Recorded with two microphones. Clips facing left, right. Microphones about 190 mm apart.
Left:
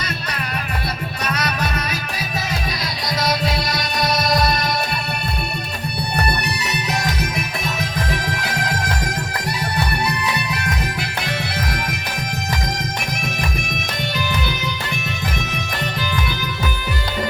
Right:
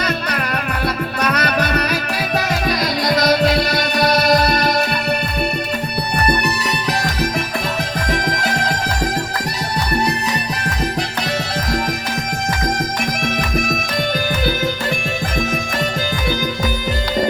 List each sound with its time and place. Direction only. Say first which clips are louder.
1.2 s music: right 5 dB; 65° right (ahead or behind)